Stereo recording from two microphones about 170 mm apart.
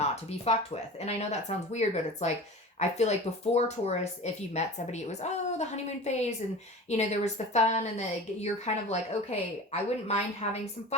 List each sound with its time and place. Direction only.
0.0 s a woman's voice: 40° left (ahead or behind)